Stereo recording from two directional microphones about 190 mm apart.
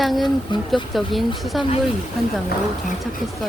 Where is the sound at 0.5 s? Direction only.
25° left (ahead or behind).